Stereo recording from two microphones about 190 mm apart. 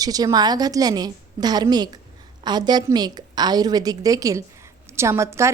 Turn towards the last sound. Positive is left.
turn(degrees=-15)  # may be behind; listen again after turning